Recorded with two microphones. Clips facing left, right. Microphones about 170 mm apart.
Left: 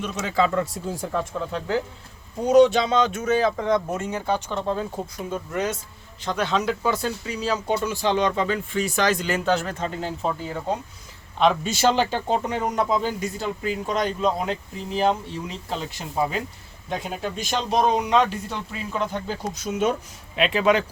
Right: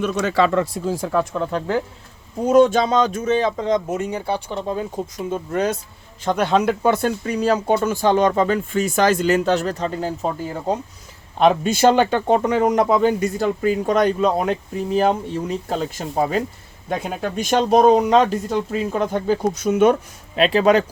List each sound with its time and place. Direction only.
0.0 s speech: 70° right (ahead or behind)
1.5 s speech: 50° right (ahead or behind)
3.2 s speech: 25° right (ahead or behind)
5.5 s speech: 35° right (ahead or behind)
6.2 s speech: 50° right (ahead or behind)
11.3 s speech: 50° right (ahead or behind)
20.3 s speech: 35° right (ahead or behind)